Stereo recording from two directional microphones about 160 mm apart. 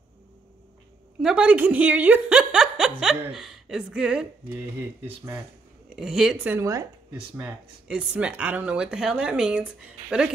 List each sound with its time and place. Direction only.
1.2 s speech: 5° right (ahead or behind)
5.9 s speech: 5° right (ahead or behind)
6.4 s a woman's voice: 15° right (ahead or behind)
7.1 s speech: 10° right (ahead or behind)